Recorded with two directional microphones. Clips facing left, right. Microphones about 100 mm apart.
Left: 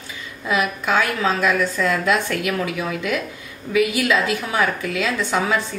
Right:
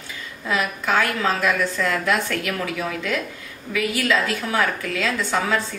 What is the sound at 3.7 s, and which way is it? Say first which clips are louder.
A woman's voice: left 3 dB; 15° left (ahead or behind).